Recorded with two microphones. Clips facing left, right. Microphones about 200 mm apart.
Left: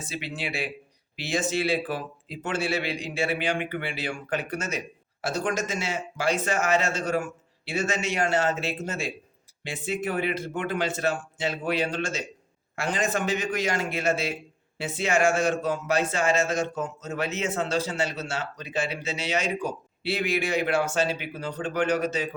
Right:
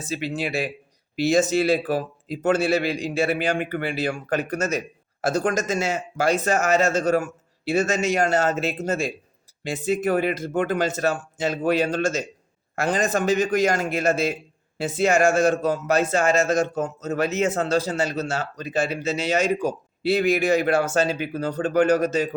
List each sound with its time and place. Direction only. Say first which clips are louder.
0.0 s speech: right 7 dB; 40° right (ahead or behind)